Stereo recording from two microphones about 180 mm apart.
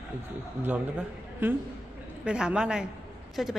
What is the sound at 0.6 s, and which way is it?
Speech, 10° right (ahead or behind).